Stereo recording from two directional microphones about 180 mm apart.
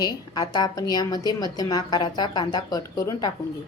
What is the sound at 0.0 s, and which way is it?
A woman's voice, 20° left (ahead or behind).